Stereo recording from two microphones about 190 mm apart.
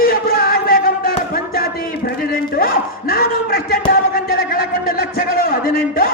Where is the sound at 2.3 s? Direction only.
50° left (ahead or behind).